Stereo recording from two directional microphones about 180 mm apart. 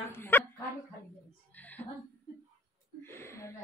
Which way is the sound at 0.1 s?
10° left (ahead or behind).